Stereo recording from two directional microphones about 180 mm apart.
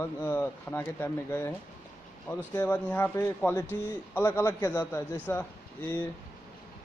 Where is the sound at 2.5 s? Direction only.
10° left (ahead or behind).